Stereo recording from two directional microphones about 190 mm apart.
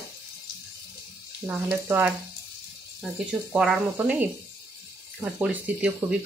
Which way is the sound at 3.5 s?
5° right (ahead or behind).